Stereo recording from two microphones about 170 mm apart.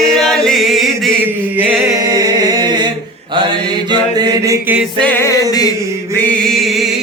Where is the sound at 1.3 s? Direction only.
10° right (ahead or behind).